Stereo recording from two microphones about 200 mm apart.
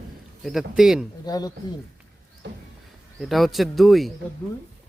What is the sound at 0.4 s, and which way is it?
Speech, centre (ahead or behind).